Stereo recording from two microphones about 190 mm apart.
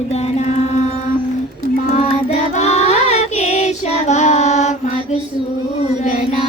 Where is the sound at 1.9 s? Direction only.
35° left (ahead or behind).